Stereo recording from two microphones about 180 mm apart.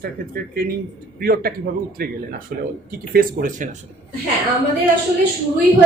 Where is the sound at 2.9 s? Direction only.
55° right (ahead or behind).